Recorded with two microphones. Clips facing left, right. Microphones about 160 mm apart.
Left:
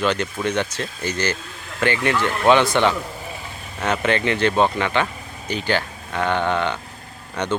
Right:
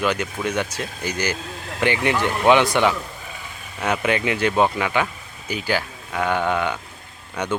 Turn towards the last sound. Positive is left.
turn(degrees=-10)  # may be behind; listen again after turning